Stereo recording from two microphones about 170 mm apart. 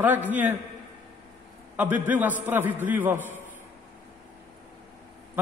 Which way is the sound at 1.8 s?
10° right (ahead or behind).